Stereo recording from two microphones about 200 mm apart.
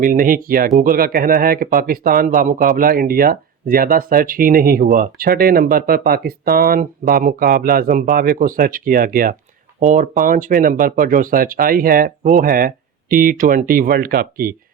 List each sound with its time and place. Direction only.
0.0 s speech: 45° right (ahead or behind)